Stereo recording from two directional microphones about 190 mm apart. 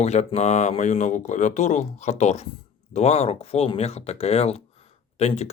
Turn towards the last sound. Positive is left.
turn(degrees=35)  # may be behind; listen again after turning